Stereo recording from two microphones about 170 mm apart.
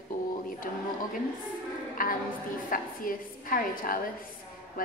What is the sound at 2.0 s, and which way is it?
A woman's voice, 55° left (ahead or behind).